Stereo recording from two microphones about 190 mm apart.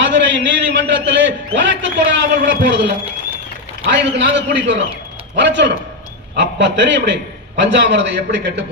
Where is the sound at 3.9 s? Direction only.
70° right (ahead or behind).